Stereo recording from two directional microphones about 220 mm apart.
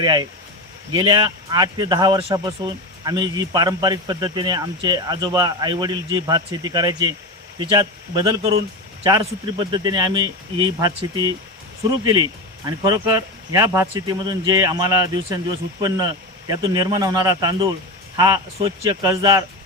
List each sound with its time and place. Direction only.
0.0 s speech: 20° right (ahead or behind)
16.5 s speech: 20° right (ahead or behind)